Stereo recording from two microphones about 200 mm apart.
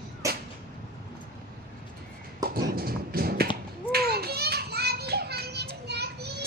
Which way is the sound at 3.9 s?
50° right (ahead or behind).